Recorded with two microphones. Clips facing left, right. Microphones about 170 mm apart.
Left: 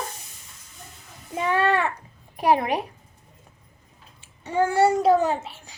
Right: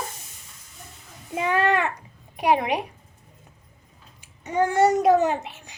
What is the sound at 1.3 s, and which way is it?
A child's voice, 15° right (ahead or behind).